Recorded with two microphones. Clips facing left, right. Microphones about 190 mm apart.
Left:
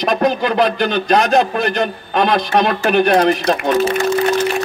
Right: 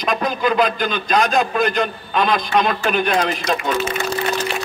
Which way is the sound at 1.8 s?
45° left (ahead or behind).